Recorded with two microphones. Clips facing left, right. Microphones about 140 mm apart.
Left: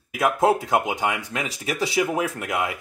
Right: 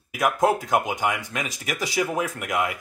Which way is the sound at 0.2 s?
25° left (ahead or behind).